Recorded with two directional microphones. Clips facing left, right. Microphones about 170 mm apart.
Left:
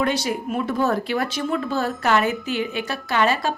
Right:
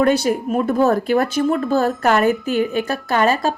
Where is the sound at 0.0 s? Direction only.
45° right (ahead or behind).